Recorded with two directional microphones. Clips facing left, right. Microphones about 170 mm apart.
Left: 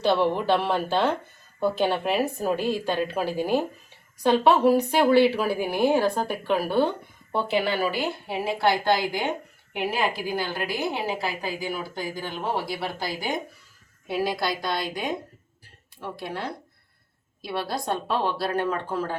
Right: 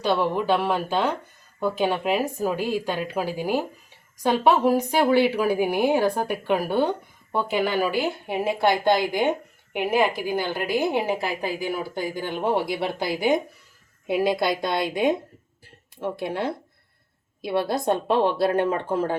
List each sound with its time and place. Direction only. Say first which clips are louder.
0.4 s a woman's voice: right 1 dB; 10° right (ahead or behind)